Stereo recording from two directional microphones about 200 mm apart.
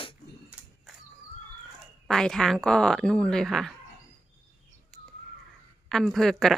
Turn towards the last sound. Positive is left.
turn(degrees=0)  # may be behind; listen again after turning